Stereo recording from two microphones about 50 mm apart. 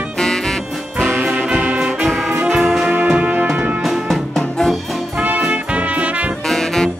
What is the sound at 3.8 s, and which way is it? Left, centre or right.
Music, centre.